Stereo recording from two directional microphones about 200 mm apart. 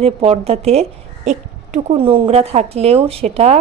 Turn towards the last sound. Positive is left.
turn(degrees=-35)  # may be behind; listen again after turning